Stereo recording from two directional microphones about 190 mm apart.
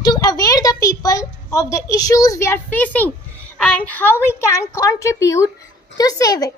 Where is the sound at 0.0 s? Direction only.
20° left (ahead or behind).